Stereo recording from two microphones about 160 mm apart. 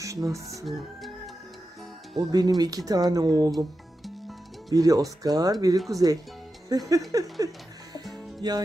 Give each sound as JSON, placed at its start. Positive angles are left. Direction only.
{"t": 0.0, "sound": "speech", "side_deg": -20}
{"t": 2.1, "sound": "speech", "side_deg": -25}
{"t": 4.7, "sound": "speech", "side_deg": -20}
{"t": 8.1, "sound": "music", "side_deg": -25}